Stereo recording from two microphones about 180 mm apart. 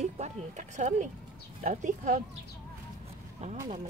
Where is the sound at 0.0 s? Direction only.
40° right (ahead or behind).